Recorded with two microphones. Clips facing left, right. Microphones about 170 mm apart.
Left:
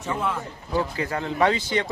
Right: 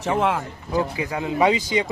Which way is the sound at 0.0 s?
85° right.